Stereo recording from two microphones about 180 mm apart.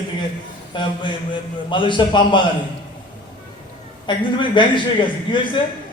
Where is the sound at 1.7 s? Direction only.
25° left (ahead or behind).